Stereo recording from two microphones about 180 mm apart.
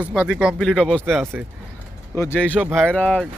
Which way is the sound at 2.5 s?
10° right (ahead or behind).